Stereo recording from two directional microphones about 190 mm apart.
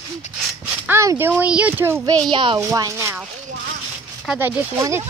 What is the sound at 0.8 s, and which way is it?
A child's voice, 15° right (ahead or behind).